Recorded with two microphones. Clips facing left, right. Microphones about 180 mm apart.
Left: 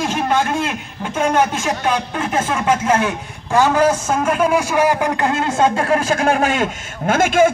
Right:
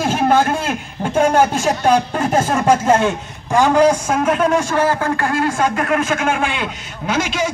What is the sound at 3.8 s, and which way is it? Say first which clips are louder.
Speech: right 2 dB; 10° right (ahead or behind).